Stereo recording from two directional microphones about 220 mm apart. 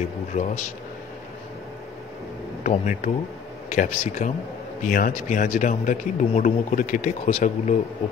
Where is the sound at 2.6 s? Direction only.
35° left (ahead or behind).